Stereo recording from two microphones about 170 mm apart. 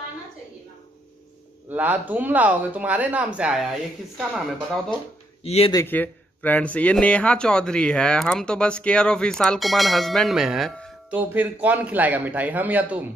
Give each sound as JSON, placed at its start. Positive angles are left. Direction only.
{"t": 1.7, "sound": "speech", "side_deg": -10}
{"t": 5.4, "sound": "speech", "side_deg": 35}
{"t": 5.7, "sound": "speech", "side_deg": 15}